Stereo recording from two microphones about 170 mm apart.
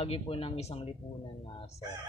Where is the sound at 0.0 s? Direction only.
35° left (ahead or behind).